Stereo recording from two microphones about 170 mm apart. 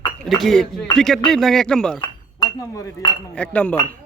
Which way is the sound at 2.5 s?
15° left (ahead or behind).